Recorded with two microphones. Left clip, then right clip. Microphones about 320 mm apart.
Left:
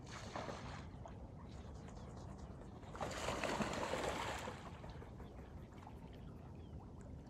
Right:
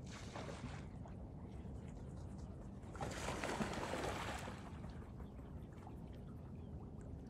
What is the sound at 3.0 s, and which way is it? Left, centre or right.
Boat, left.